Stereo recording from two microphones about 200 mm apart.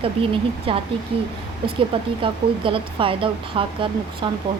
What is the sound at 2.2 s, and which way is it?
Speech, 25° right (ahead or behind).